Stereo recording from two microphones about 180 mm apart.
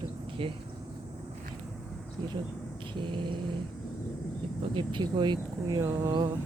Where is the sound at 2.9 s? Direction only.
25° right (ahead or behind).